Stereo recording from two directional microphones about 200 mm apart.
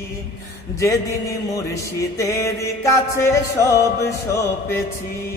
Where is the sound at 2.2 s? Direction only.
15° left (ahead or behind).